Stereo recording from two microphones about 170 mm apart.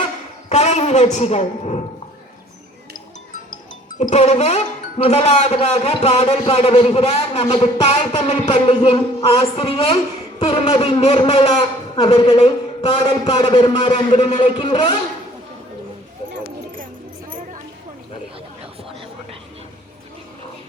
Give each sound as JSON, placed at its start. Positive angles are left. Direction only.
{"t": 0.5, "sound": "a woman's voice", "side_deg": 40}
{"t": 3.9, "sound": "speech", "side_deg": 45}
{"t": 13.9, "sound": "speech", "side_deg": 40}
{"t": 18.6, "sound": "a sound", "side_deg": -35}